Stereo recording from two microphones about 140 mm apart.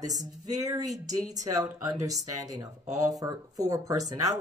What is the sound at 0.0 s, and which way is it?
A woman's voice, 25° right (ahead or behind).